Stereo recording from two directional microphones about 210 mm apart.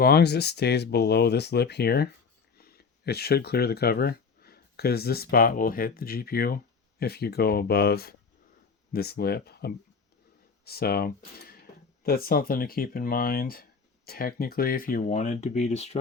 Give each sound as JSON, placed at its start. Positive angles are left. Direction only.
{"t": 0.0, "sound": "speech", "side_deg": 50}